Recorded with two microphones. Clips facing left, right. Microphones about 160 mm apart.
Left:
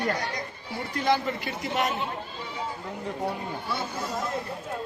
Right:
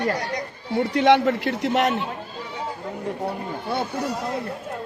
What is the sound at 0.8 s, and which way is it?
A man's voice, 75° right (ahead or behind).